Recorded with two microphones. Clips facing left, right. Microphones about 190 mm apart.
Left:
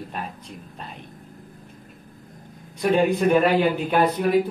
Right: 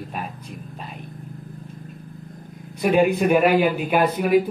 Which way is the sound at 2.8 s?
10° right (ahead or behind).